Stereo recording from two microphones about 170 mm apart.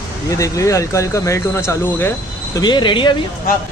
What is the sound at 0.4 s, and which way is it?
Speech, 20° left (ahead or behind).